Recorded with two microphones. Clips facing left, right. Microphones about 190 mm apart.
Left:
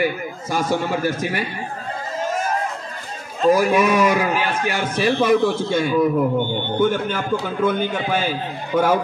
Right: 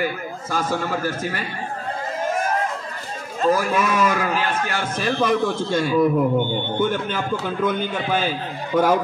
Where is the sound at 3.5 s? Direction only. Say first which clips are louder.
Left 6 dB; 15° left (ahead or behind).